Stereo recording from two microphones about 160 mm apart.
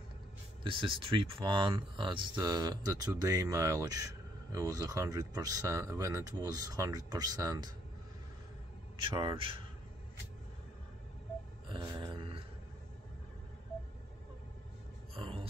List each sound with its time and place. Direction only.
0.7 s speech: 30° right (ahead or behind)
9.0 s speech: 30° right (ahead or behind)
11.7 s a sound: 25° right (ahead or behind)
15.1 s music: 30° right (ahead or behind)